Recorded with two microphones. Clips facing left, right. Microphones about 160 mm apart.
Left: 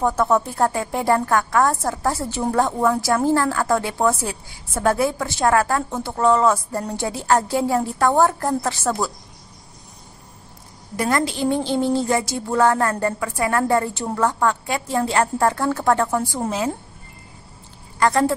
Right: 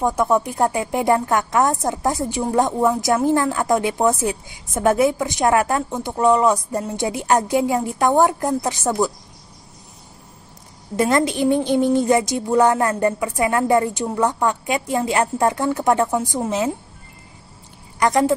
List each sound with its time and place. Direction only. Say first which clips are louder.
0.0 s a woman's voice: right 1 dB; 15° right (ahead or behind)
11.0 s speech: right 3 dB; 25° right (ahead or behind)
17.9 s a woman's voice: right 1 dB; 20° right (ahead or behind)